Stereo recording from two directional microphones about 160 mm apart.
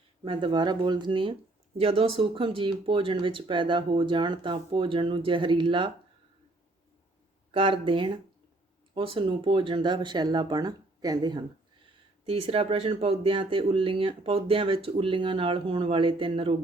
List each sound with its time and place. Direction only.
0.3 s speech: 30° right (ahead or behind)
7.5 s speech: 35° right (ahead or behind)